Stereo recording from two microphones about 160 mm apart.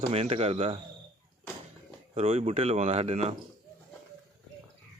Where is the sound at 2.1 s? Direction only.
40° right (ahead or behind).